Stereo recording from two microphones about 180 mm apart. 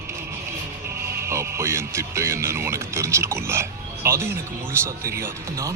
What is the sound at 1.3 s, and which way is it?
Music, 15° right (ahead or behind).